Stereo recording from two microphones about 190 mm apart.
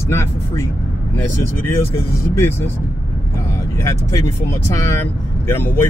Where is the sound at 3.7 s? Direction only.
15° left (ahead or behind).